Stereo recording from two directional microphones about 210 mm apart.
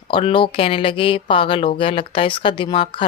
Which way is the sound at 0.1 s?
25° left (ahead or behind).